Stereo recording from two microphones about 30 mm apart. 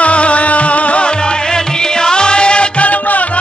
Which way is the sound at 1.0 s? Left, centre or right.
Left.